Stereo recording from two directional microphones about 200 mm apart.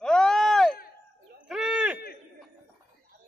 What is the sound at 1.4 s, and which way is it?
Owl, 5° right (ahead or behind).